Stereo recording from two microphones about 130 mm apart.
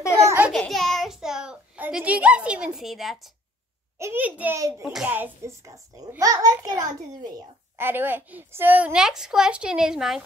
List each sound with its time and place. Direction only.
0.2 s babbling: 20° right (ahead or behind)
0.5 s a child's voice: 5° left (ahead or behind)
4.0 s a woman's voice: 15° right (ahead or behind)
4.6 s a child's voice: 25° right (ahead or behind)
4.8 s a child's voice: 10° right (ahead or behind); by 6.7 s 30° right (ahead or behind)
7.7 s a woman's voice: 15° right (ahead or behind)